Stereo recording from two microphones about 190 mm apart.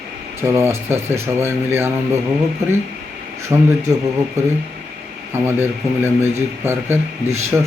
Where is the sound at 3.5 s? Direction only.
15° right (ahead or behind).